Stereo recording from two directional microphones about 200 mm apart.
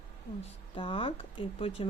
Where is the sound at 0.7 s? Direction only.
25° left (ahead or behind).